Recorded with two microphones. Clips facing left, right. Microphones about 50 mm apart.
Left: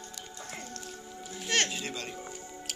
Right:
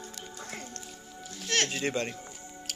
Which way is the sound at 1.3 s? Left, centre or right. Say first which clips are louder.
Left 1 dB; centre.